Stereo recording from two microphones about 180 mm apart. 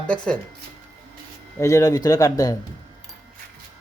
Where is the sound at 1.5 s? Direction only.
15° left (ahead or behind).